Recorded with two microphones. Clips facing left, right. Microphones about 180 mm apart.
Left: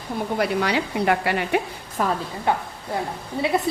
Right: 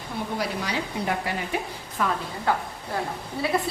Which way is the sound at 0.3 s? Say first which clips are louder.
Left 8 dB; 65° left (ahead or behind).